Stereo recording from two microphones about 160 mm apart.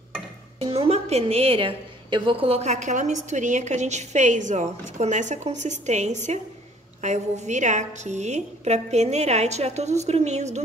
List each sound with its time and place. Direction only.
0.6 s a woman's voice: 40° right (ahead or behind)